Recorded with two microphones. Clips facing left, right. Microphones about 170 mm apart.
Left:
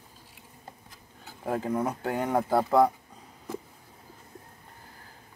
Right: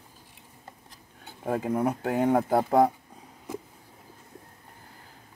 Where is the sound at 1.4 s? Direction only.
10° right (ahead or behind).